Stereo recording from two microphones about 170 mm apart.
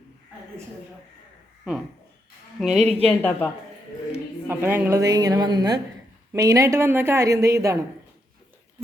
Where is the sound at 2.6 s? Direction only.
Centre (ahead or behind).